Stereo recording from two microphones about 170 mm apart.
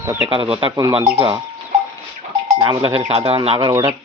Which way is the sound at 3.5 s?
20° right (ahead or behind).